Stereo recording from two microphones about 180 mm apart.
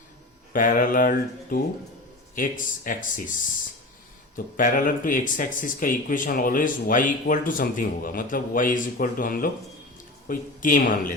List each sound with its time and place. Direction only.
0.5 s speech: 45° left (ahead or behind)
4.4 s speech: 50° left (ahead or behind)